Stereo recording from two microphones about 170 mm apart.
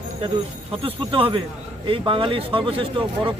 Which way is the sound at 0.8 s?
30° right (ahead or behind).